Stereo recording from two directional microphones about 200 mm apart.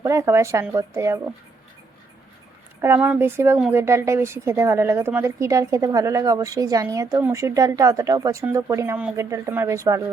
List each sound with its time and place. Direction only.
0.0 s speech: 15° right (ahead or behind)
2.8 s speech: 10° right (ahead or behind)